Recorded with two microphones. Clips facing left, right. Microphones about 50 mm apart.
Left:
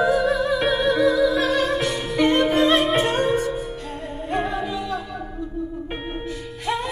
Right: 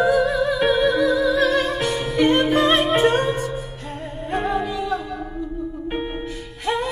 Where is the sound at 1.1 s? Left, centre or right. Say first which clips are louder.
Right 1 dB; centre.